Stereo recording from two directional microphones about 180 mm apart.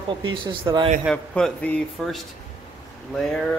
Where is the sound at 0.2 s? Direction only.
25° right (ahead or behind).